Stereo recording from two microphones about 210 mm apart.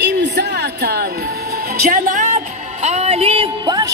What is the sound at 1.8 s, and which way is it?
A woman's voice, 40° right (ahead or behind).